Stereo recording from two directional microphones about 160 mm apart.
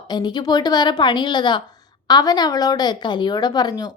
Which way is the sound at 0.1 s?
25° left (ahead or behind).